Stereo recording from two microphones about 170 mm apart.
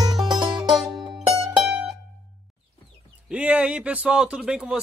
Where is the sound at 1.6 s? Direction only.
5° right (ahead or behind).